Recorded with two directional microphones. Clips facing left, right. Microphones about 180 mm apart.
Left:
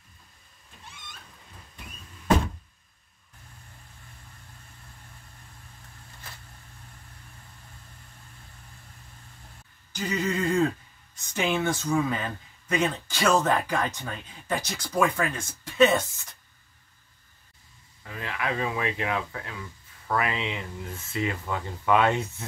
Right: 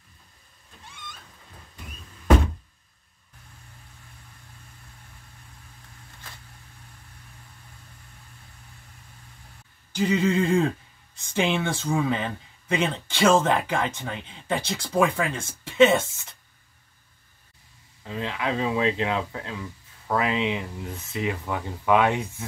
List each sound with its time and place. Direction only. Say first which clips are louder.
9.9 s speech: right 6 dB; 30° right (ahead or behind)
18.0 s speech: right 3 dB; 20° right (ahead or behind)